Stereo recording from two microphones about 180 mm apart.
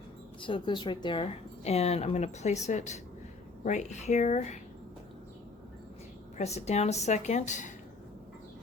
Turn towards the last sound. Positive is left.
turn(degrees=45)  # may be behind; listen again after turning